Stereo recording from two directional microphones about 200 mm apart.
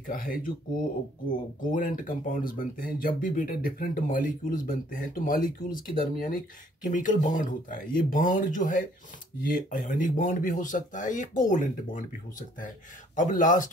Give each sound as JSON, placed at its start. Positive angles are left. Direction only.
{"t": 0.0, "sound": "speech", "side_deg": 45}